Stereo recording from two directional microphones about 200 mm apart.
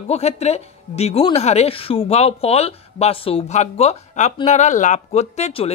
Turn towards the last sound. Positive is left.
turn(degrees=30)  # may be behind; listen again after turning